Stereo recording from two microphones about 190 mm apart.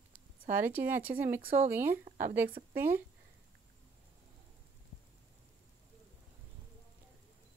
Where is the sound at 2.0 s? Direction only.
45° right (ahead or behind).